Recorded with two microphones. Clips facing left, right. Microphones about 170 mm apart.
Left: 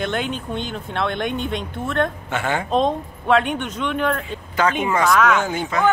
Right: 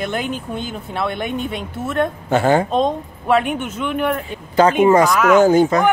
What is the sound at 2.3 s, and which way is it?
Speech, 35° right (ahead or behind).